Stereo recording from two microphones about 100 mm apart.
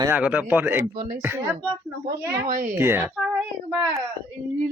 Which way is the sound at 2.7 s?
25° right (ahead or behind).